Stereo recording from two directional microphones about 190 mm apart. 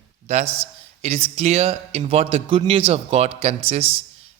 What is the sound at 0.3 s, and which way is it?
A man's voice, 35° right (ahead or behind).